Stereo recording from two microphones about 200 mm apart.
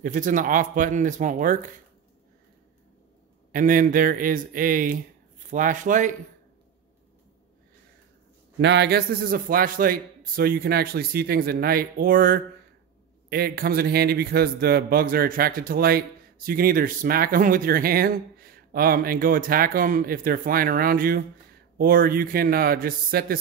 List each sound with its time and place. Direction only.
0.0 s speech: 40° right (ahead or behind)
3.5 s a man's voice: 45° right (ahead or behind)
8.5 s a man's voice: 60° right (ahead or behind)